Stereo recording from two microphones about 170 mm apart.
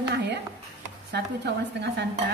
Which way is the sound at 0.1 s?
80° right.